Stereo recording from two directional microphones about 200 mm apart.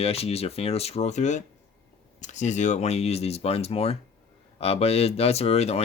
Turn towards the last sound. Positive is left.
turn(degrees=30)  # may be behind; listen again after turning